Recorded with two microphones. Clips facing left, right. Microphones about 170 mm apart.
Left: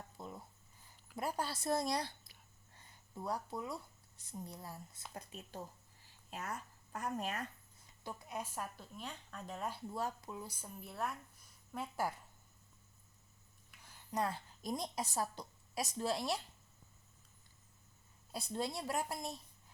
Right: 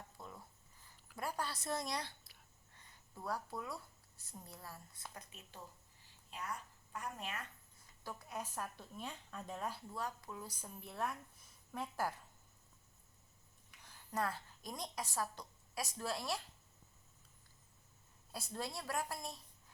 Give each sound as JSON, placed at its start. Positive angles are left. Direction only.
{"t": 0.2, "sound": "writing", "side_deg": 25}
{"t": 1.1, "sound": "a woman's voice", "side_deg": 25}
{"t": 3.2, "sound": "a woman's voice", "side_deg": 20}
{"t": 5.1, "sound": "a woman's voice", "side_deg": 35}
{"t": 8.0, "sound": "speech", "side_deg": 15}
{"t": 9.0, "sound": "speech", "side_deg": 0}
{"t": 9.9, "sound": "speech", "side_deg": 25}
{"t": 13.8, "sound": "a sound", "side_deg": 15}
{"t": 14.6, "sound": "a woman's voice", "side_deg": 25}
{"t": 18.5, "sound": "a woman's voice", "side_deg": 25}